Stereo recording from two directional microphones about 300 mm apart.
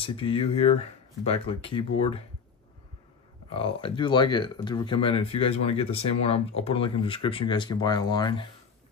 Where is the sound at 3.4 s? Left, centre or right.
Centre.